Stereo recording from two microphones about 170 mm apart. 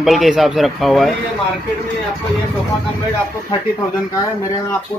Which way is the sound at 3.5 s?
20° left (ahead or behind).